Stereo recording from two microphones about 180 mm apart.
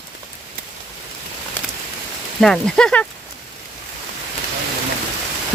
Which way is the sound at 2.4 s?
5° left (ahead or behind).